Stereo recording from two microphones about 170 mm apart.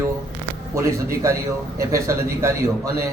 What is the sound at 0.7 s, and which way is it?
A man's voice, 20° right (ahead or behind).